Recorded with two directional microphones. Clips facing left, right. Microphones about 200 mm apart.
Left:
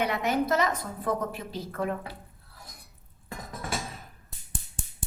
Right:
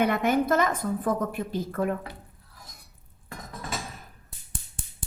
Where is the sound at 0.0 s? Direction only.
50° right (ahead or behind).